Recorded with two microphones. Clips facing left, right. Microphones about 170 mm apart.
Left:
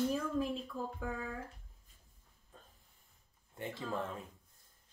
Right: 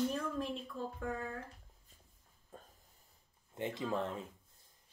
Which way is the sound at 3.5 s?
20° right (ahead or behind).